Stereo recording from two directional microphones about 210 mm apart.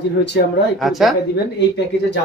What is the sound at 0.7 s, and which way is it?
Speech, centre (ahead or behind).